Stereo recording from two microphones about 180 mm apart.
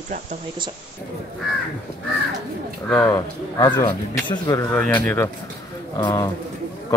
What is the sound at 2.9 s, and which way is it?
Speech, 10° left (ahead or behind).